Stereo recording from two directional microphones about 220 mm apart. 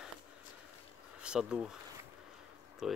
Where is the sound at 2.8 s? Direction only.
Centre (ahead or behind).